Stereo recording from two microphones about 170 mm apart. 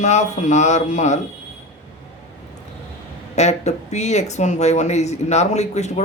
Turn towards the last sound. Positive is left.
turn(degrees=40)  # may be behind; listen again after turning